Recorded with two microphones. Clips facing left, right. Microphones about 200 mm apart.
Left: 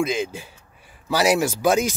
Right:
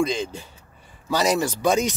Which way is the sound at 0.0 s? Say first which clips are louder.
Even; 5° left (ahead or behind).